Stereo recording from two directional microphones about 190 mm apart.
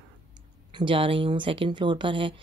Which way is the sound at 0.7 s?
25° right (ahead or behind).